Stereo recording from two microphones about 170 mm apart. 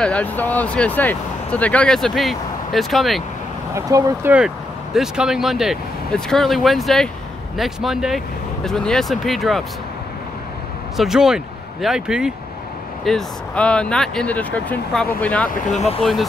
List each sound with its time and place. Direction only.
0.0 s speech: 5° left (ahead or behind)
3.7 s speech: 15° right (ahead or behind); by 9.7 s centre (ahead or behind)
11.0 s speech: 5° right (ahead or behind)
15.5 s speech: 40° left (ahead or behind)
16.0 s speech: centre (ahead or behind)